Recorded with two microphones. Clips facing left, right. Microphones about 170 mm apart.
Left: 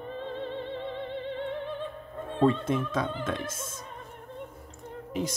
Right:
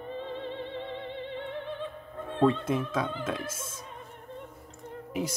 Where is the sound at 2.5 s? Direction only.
Centre (ahead or behind).